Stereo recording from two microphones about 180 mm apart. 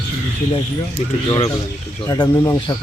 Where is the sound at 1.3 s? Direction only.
30° left (ahead or behind).